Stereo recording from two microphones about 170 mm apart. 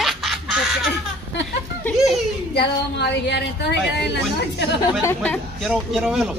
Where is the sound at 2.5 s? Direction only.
85° left.